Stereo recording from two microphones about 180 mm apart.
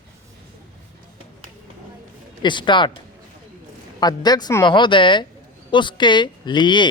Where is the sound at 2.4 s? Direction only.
25° left (ahead or behind).